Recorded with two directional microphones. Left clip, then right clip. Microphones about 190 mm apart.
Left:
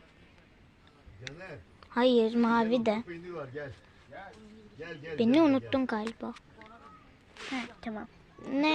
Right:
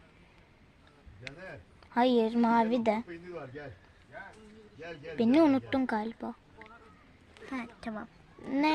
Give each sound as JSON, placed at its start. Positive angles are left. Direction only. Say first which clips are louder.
{"t": 1.9, "sound": "a woman's voice", "louder": "left 1 dB", "side_deg": -20}
{"t": 5.1, "sound": "a woman's voice", "louder": "even", "side_deg": -20}
{"t": 7.4, "sound": "a sound", "louder": "left 6 dB", "side_deg": 0}
{"t": 7.8, "sound": "speech", "louder": "even", "side_deg": -40}
{"t": 8.4, "sound": "a woman's voice", "louder": "even", "side_deg": -20}